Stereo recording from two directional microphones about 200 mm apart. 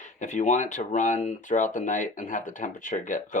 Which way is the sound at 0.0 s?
35° left (ahead or behind).